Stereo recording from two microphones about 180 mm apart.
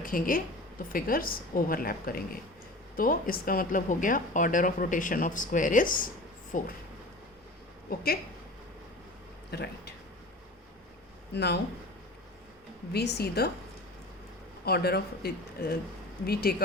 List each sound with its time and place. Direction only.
0.0 s a woman's voice: 50° left (ahead or behind)
7.9 s speech: 60° left (ahead or behind)
9.5 s speech: 65° left (ahead or behind)
11.3 s speech: 70° left (ahead or behind)
12.9 s speech: 65° left (ahead or behind)
14.6 s speech: 60° left (ahead or behind)